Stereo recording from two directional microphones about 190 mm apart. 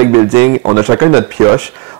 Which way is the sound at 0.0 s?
15° right (ahead or behind).